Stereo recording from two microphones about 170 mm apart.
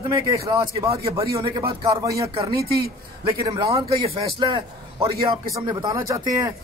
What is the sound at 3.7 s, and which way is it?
A man's voice, 30° right (ahead or behind).